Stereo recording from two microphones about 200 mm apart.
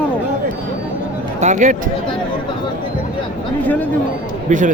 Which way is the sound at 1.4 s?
40° right (ahead or behind).